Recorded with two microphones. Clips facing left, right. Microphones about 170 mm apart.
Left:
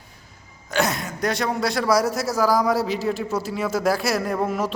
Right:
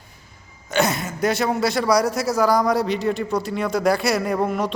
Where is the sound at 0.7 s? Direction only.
Centre (ahead or behind).